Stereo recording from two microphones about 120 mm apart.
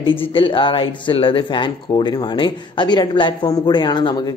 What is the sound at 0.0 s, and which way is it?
Speech, 50° left (ahead or behind).